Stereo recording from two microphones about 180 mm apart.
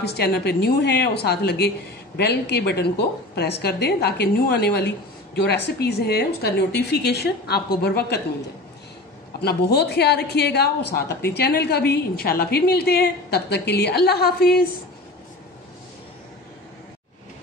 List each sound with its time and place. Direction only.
0.0 s a woman's voice: 65° left (ahead or behind)
9.4 s a woman's voice: 60° left (ahead or behind)